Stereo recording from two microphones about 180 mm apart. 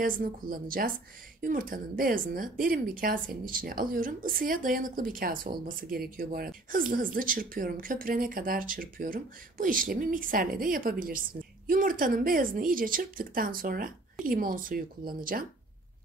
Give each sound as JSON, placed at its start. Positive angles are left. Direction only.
{"t": 0.0, "sound": "speech", "side_deg": -50}